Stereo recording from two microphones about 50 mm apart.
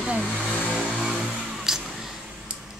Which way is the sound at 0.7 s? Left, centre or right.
Centre.